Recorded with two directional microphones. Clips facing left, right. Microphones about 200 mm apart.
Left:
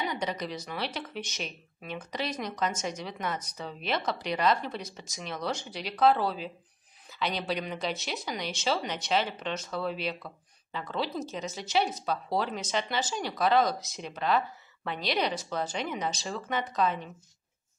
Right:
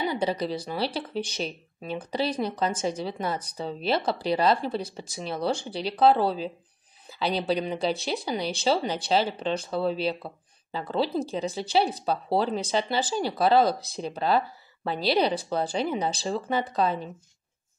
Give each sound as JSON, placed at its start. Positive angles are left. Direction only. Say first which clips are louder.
{"t": 0.0, "sound": "speech", "louder": "right 6 dB", "side_deg": -30}